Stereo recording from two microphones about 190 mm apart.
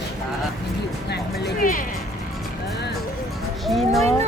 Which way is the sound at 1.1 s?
55° left (ahead or behind).